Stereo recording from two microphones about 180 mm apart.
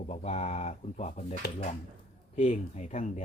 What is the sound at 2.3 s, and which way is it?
Speech, 35° left (ahead or behind).